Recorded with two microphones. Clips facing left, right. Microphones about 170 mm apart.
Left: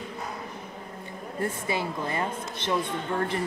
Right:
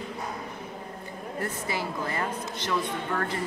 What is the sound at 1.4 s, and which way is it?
Speech, 25° left (ahead or behind).